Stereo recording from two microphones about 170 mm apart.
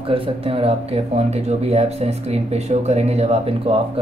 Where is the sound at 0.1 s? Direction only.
35° right (ahead or behind).